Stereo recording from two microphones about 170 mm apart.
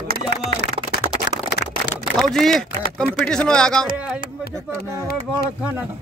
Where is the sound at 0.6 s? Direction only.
70° left (ahead or behind).